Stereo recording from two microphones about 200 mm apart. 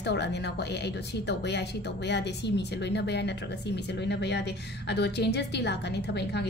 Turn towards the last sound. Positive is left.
turn(degrees=55)  # may be behind; listen again after turning